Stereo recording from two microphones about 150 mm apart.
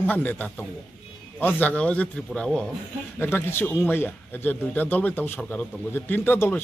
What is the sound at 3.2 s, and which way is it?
A man's voice, 15° left (ahead or behind).